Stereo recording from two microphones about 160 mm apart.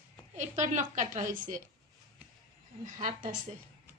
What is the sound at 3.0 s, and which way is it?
Speech, 55° right (ahead or behind).